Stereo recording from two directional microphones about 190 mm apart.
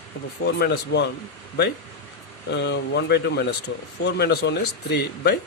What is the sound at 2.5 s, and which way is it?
Speech, 65° left (ahead or behind).